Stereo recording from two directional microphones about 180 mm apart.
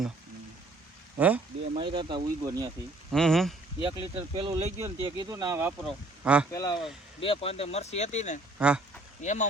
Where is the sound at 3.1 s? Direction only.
Centre (ahead or behind).